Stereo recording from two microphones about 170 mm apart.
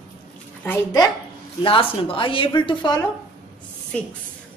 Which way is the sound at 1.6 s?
30° left (ahead or behind).